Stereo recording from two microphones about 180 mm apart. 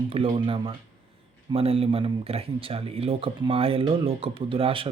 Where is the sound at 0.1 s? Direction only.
30° right (ahead or behind).